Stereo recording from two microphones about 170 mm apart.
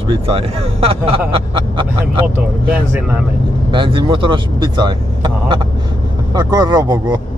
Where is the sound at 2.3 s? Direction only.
10° right (ahead or behind).